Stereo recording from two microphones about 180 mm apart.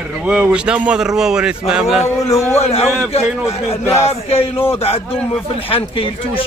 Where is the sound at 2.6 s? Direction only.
35° left (ahead or behind).